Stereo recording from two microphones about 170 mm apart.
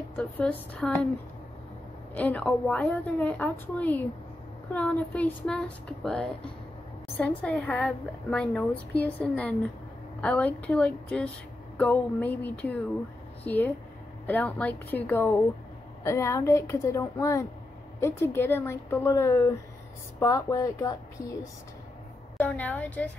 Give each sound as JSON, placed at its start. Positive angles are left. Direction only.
{"t": 0.1, "sound": "a woman's voice", "side_deg": 10}
{"t": 2.1, "sound": "a woman's voice", "side_deg": 10}
{"t": 22.4, "sound": "a woman's voice", "side_deg": 10}